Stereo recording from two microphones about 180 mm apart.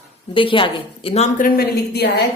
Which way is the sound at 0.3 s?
30° left (ahead or behind).